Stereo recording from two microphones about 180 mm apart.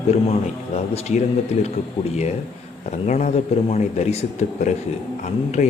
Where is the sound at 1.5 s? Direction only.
40° left (ahead or behind).